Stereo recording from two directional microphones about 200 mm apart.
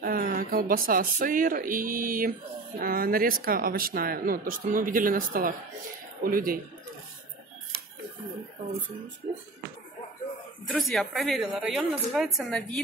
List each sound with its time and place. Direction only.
0.0 s speech: 45° right (ahead or behind)
10.7 s a woman's voice: centre (ahead or behind)